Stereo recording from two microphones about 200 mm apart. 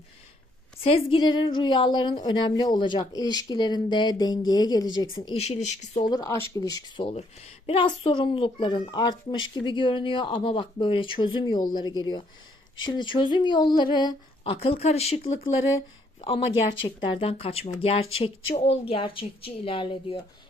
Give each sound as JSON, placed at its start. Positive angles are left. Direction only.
{"t": 0.8, "sound": "a woman's voice", "side_deg": 30}
{"t": 5.4, "sound": "speech", "side_deg": 35}
{"t": 6.1, "sound": "a woman's voice", "side_deg": 15}
{"t": 17.1, "sound": "a woman's voice", "side_deg": 25}